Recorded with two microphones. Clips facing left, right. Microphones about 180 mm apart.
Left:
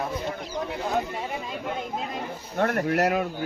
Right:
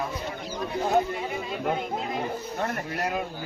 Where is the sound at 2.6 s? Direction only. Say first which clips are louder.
Left 9 dB; 70° left (ahead or behind).